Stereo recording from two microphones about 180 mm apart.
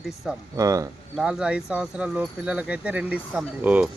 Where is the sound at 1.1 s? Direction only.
5° right (ahead or behind).